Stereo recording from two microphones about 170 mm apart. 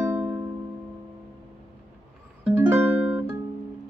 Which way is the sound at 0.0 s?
15° right (ahead or behind).